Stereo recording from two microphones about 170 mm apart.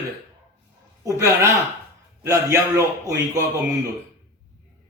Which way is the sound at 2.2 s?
15° right (ahead or behind).